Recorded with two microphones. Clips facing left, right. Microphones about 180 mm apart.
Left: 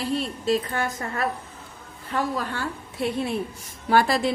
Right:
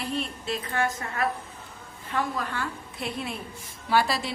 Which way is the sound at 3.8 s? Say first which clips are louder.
Left 4 dB; 50° left (ahead or behind).